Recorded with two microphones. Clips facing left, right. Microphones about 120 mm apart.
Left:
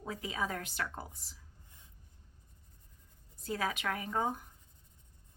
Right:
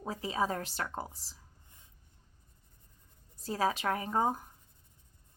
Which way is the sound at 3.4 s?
30° right (ahead or behind).